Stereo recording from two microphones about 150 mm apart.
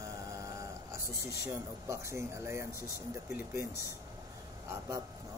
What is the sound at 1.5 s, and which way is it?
Speech, 20° right (ahead or behind).